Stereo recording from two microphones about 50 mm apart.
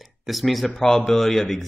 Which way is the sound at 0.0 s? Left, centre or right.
Centre.